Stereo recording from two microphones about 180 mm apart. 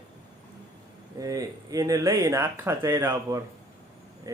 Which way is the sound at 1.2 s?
20° right (ahead or behind).